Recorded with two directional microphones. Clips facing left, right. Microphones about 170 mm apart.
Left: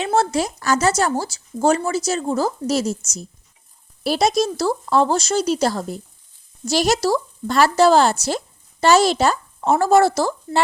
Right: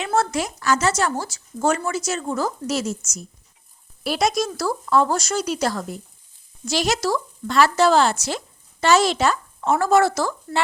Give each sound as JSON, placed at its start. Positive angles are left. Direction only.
{"t": 0.0, "sound": "speech", "side_deg": 30}